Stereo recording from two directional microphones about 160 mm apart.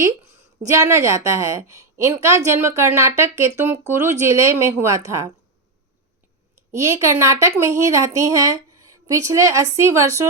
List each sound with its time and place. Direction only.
0.7 s a woman's voice: 20° right (ahead or behind)
6.8 s a woman's voice: 20° right (ahead or behind)